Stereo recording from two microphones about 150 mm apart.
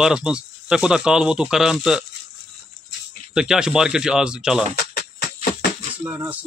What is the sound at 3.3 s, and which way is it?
Speech, 5° right (ahead or behind).